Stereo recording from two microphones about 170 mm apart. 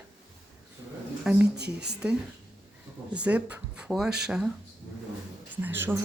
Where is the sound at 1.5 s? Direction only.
75° right (ahead or behind).